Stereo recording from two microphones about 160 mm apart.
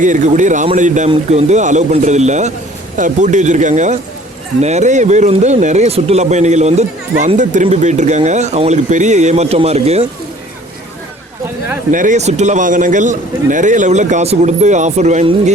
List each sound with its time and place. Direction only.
0.0 s speech: 50° right (ahead or behind)
11.9 s speech: 55° right (ahead or behind)